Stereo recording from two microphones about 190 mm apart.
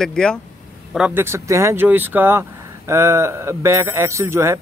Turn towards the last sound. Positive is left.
turn(degrees=-15)  # may be behind; listen again after turning